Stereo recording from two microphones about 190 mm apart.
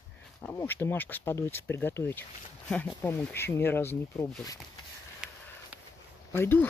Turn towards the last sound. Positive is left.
turn(degrees=10)  # may be behind; listen again after turning